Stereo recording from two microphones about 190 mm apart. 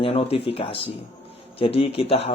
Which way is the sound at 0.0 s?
30° left (ahead or behind).